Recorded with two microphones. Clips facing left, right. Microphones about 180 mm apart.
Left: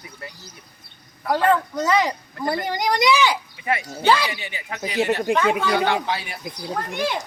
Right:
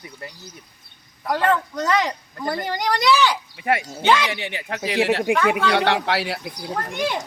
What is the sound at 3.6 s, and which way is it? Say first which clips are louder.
Speech: right 4 dB; 60° right (ahead or behind).